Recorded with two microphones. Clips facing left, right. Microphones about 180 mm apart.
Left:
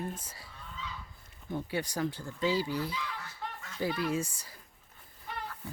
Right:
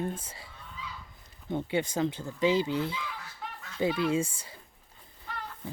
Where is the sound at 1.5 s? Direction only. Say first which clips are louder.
Right 5 dB; 25° right (ahead or behind).